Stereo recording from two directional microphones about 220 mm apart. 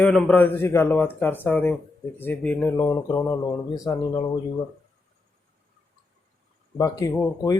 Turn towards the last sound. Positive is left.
turn(degrees=15)  # may be behind; listen again after turning